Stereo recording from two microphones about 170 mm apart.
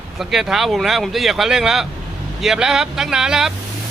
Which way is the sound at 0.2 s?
Centre (ahead or behind).